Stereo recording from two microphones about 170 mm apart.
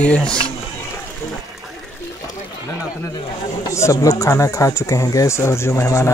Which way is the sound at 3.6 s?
20° left (ahead or behind).